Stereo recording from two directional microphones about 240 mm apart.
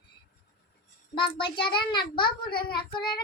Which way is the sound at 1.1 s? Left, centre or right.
Centre.